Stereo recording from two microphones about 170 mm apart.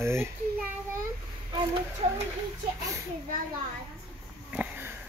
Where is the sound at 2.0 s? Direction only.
35° right (ahead or behind).